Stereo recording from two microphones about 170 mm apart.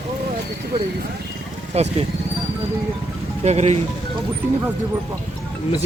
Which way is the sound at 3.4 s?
40° right (ahead or behind).